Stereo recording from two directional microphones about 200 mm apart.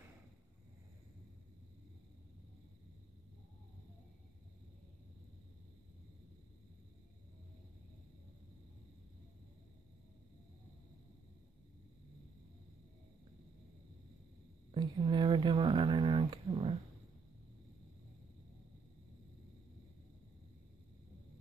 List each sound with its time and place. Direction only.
14.7 s speech: 20° right (ahead or behind)